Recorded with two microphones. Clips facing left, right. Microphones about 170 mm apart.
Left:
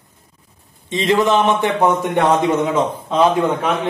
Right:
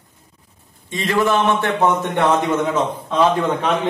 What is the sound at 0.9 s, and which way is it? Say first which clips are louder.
A man's voice: left 3 dB; 20° left (ahead or behind).